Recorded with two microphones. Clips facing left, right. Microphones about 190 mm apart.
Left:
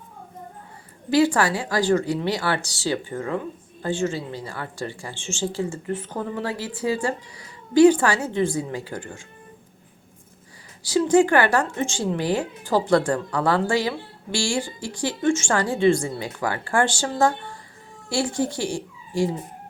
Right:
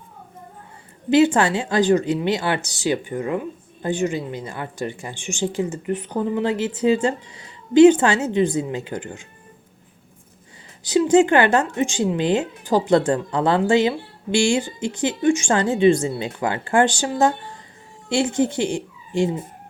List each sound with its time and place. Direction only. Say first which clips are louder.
1.1 s speech: right 3 dB; 20° right (ahead or behind)
10.8 s speech: right 2 dB; 20° right (ahead or behind)